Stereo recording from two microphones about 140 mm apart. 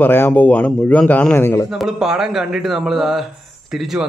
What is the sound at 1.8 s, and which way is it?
A man's voice, 5° right (ahead or behind).